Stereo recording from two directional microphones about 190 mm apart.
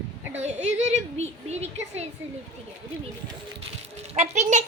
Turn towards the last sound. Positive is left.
turn(degrees=-40)  # may be behind; listen again after turning